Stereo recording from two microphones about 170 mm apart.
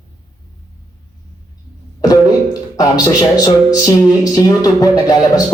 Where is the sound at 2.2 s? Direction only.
20° left (ahead or behind).